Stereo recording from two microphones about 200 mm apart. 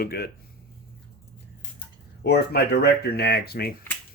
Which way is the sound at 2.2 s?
55° left (ahead or behind).